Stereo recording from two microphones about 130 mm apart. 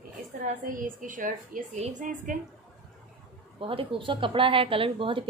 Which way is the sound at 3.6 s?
45° right (ahead or behind).